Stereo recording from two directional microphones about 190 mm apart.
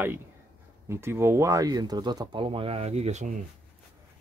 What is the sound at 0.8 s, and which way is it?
Speech, 15° right (ahead or behind).